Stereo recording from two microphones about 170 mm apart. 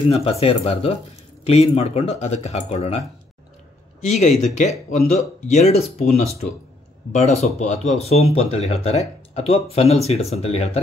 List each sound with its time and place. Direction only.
0.1 s speech: 35° left (ahead or behind)
4.0 s speech: 40° left (ahead or behind)